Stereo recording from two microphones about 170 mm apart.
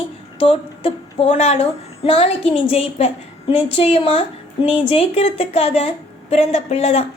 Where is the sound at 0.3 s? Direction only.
35° left (ahead or behind).